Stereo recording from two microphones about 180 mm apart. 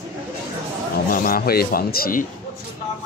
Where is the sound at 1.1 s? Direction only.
50° left (ahead or behind).